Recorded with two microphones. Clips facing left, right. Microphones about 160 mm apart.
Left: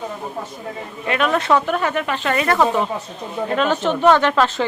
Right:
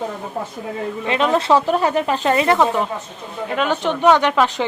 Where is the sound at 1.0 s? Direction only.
25° right (ahead or behind).